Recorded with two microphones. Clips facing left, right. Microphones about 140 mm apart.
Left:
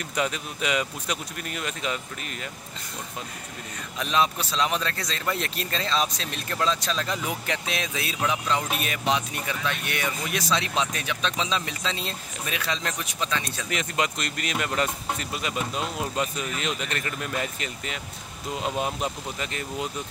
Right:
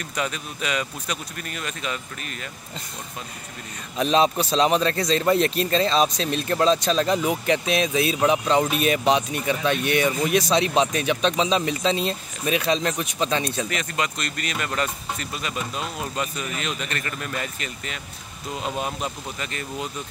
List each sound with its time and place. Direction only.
0.1 s speech: 20° left (ahead or behind)
4.0 s speech: 25° right (ahead or behind)
13.7 s speech: 20° left (ahead or behind)